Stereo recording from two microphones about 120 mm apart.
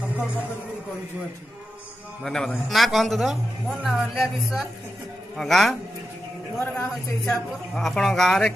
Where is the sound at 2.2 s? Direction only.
5° left (ahead or behind).